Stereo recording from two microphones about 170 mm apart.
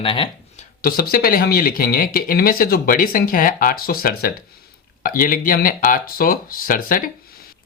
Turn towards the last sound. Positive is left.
turn(degrees=55)  # may be behind; listen again after turning